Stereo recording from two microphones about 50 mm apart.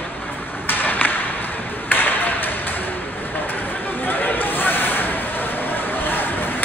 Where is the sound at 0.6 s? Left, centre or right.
Left.